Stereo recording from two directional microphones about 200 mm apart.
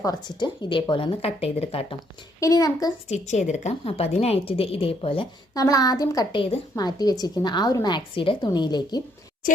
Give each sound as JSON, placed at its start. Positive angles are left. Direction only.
{"t": 0.0, "sound": "a woman's voice", "side_deg": 20}
{"t": 2.4, "sound": "a child's voice", "side_deg": 15}
{"t": 3.1, "sound": "a woman's voice", "side_deg": 35}